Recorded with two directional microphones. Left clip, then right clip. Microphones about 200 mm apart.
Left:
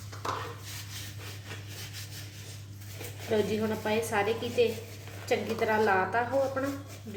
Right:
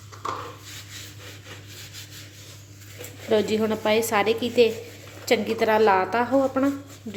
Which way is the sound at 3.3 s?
55° right (ahead or behind).